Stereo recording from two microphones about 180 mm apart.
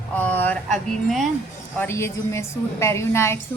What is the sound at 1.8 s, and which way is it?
Speech, 15° left (ahead or behind).